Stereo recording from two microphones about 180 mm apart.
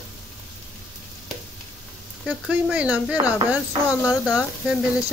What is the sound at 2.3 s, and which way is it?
Speech, 5° right (ahead or behind).